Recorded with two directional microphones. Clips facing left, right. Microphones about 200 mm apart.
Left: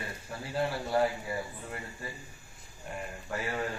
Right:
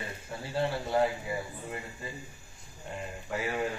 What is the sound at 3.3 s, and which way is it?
Speech, 15° right (ahead or behind).